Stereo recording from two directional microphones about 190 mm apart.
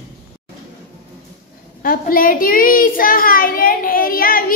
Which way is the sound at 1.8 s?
50° left (ahead or behind).